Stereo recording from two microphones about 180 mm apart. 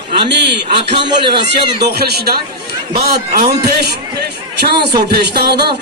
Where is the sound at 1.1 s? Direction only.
25° right (ahead or behind).